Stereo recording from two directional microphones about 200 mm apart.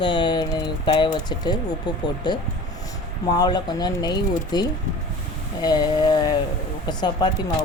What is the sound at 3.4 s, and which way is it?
Speech, 20° left (ahead or behind).